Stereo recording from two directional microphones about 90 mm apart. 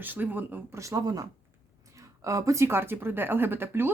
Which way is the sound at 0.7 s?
35° right (ahead or behind).